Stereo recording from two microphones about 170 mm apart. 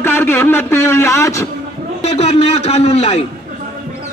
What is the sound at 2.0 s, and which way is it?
A man's voice, 40° left (ahead or behind).